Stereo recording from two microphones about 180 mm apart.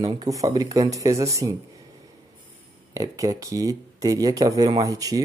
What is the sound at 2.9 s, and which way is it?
Speech, 15° right (ahead or behind).